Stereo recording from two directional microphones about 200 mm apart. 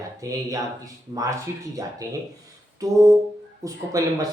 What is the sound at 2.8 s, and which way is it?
Speech, 15° right (ahead or behind).